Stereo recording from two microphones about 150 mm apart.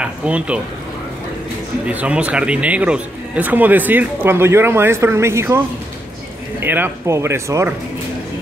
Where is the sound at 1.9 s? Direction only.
10° right (ahead or behind).